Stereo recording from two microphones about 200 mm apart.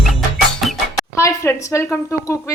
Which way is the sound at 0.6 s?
Centre (ahead or behind).